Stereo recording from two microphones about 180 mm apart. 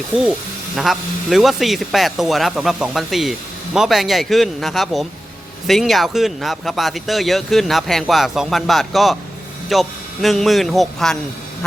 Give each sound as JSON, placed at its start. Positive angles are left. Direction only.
{"t": 0.8, "sound": "speech", "side_deg": 0}